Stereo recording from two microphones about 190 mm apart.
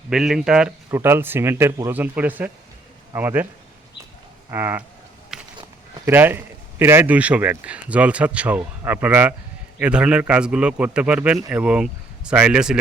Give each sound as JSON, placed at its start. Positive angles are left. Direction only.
{"t": 0.1, "sound": "a man's voice", "side_deg": -5}
{"t": 4.5, "sound": "a man's voice", "side_deg": -10}
{"t": 5.3, "sound": "a sound", "side_deg": -5}
{"t": 6.1, "sound": "a man's voice", "side_deg": -10}